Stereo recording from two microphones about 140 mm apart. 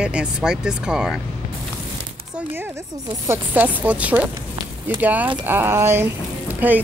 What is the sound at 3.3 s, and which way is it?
Speech, 10° right (ahead or behind).